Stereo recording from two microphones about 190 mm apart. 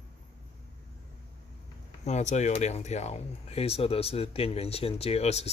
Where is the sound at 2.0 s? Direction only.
35° left (ahead or behind).